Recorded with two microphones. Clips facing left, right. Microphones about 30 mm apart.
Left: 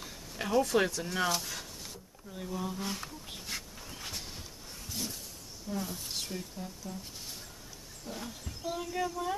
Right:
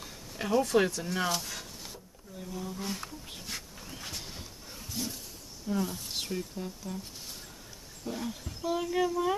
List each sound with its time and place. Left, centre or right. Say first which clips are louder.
0.0 s speech: right 1 dB; centre
2.3 s speech: left 2 dB; left
2.8 s a sound: right 1 dB; centre
5.7 s a woman's voice: right 5 dB; centre
6.9 s speech: right 3 dB; right
8.0 s speech: right 6 dB; centre